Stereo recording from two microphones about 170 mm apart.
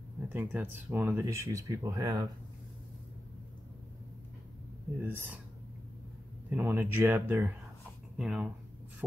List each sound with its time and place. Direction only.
0.3 s speech: 10° right (ahead or behind)
5.0 s speech: 10° right (ahead or behind)
6.5 s speech: 10° right (ahead or behind)